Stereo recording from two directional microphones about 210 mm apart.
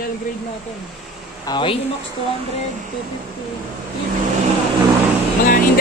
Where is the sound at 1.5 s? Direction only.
25° left (ahead or behind).